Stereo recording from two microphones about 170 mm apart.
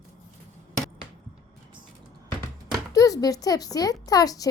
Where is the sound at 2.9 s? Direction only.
20° left (ahead or behind).